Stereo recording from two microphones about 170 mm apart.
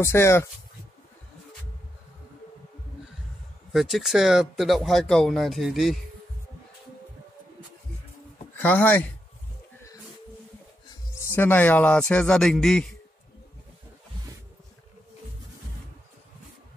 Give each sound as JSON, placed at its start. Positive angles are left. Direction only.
{"t": 0.0, "sound": "speech", "side_deg": 15}
{"t": 3.7, "sound": "speech", "side_deg": 0}
{"t": 8.5, "sound": "speech", "side_deg": 10}
{"t": 10.9, "sound": "speech", "side_deg": 15}